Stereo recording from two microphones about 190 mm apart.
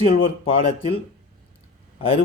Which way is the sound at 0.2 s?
30° left (ahead or behind).